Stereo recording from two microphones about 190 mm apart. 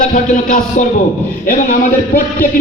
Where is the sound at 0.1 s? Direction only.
40° left (ahead or behind).